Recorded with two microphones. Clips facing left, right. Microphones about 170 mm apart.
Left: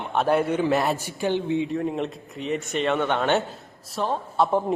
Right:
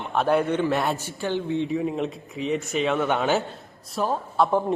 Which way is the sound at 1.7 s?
Centre (ahead or behind).